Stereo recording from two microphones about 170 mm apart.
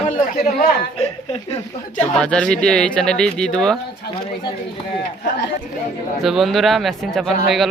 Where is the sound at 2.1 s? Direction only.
5° left (ahead or behind).